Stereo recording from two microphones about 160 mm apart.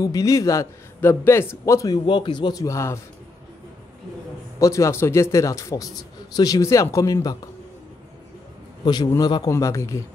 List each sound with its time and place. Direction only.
0.0 s a man's voice: 20° left (ahead or behind)
2.0 s a man's voice: 30° left (ahead or behind)
4.6 s a man's voice: 20° left (ahead or behind)
8.8 s a man's voice: 25° left (ahead or behind)